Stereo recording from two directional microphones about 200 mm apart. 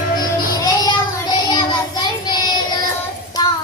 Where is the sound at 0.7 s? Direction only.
20° left (ahead or behind).